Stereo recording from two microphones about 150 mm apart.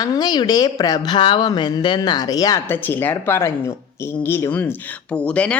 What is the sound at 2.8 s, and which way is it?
Speech, 15° left (ahead or behind).